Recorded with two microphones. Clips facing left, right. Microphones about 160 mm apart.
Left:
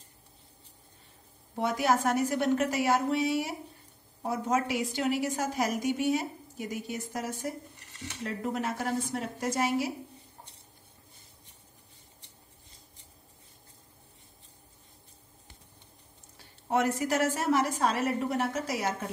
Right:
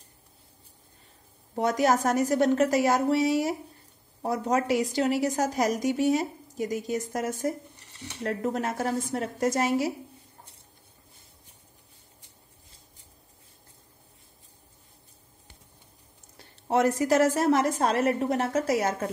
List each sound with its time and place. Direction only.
1.5 s a woman's voice: 40° right (ahead or behind)
16.6 s a woman's voice: 40° right (ahead or behind)